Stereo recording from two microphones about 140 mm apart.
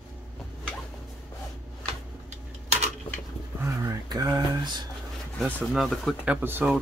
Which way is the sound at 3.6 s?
25° right (ahead or behind).